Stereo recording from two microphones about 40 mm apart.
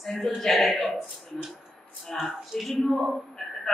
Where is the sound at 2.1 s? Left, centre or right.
Centre.